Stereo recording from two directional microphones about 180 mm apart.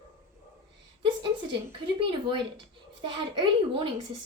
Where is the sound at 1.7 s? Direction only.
30° right (ahead or behind).